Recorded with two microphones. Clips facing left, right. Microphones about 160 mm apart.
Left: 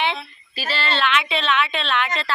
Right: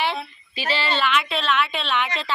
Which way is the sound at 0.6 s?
15° right (ahead or behind).